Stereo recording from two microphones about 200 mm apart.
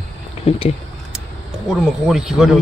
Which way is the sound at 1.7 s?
5° right (ahead or behind).